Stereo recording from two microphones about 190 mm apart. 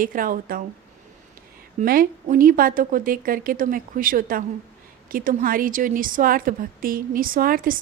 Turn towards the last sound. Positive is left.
turn(degrees=-45)  # may be behind; listen again after turning